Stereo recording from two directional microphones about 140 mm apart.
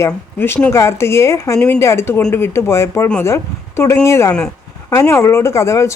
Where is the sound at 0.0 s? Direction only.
15° left (ahead or behind).